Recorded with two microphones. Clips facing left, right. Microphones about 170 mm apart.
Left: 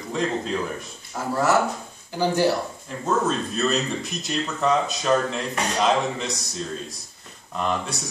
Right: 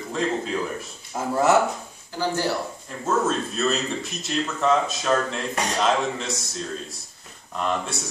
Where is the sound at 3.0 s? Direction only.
Centre (ahead or behind).